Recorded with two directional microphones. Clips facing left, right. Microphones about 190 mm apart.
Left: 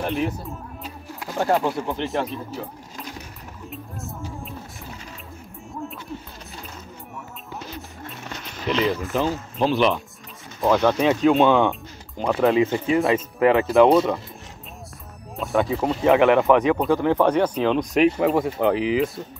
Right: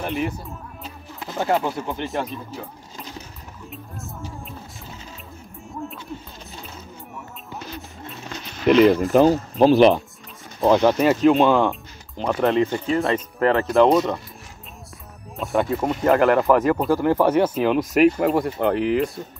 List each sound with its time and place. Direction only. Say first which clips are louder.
0.0 s speech: left 1 dB; centre (ahead or behind)
5.7 s music: right 1 dB; centre (ahead or behind)
8.6 s speech: right 9 dB; 55° right (ahead or behind)
9.2 s speech: right 7 dB; 40° right (ahead or behind)
10.6 s speech: right 2 dB; 15° right (ahead or behind); by 14.2 s 5° left (ahead or behind)
15.3 s speech: even; centre (ahead or behind)